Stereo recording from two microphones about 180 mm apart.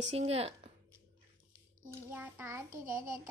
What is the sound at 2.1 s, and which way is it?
Speech, 10° right (ahead or behind).